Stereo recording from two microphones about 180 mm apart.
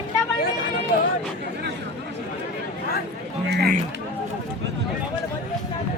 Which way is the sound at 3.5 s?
65° right (ahead or behind).